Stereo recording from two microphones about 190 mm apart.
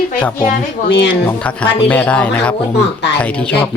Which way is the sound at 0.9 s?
70° left (ahead or behind).